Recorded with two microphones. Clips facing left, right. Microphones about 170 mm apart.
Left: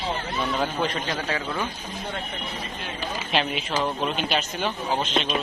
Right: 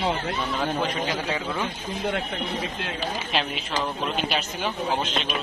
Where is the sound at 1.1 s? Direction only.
15° right (ahead or behind).